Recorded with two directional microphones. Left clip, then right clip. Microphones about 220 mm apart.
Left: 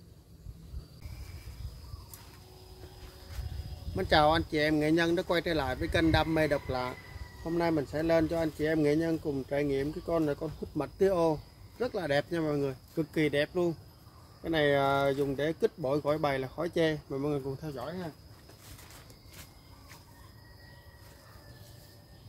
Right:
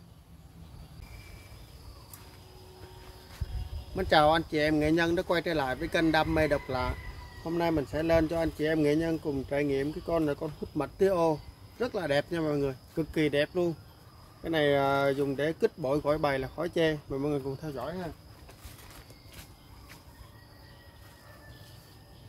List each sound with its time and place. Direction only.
3.9 s speech: 5° right (ahead or behind)